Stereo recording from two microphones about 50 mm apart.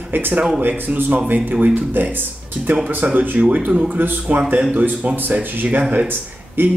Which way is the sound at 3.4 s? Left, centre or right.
Right.